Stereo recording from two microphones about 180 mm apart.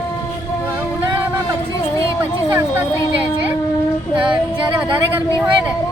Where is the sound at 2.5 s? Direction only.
15° right (ahead or behind).